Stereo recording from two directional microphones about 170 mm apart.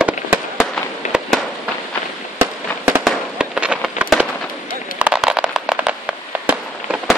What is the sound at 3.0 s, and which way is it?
Fireworks, 5° right (ahead or behind).